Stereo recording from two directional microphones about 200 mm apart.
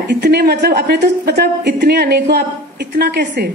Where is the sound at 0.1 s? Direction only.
55° right (ahead or behind).